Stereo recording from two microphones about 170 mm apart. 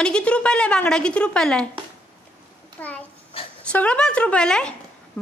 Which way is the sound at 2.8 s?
10° left (ahead or behind).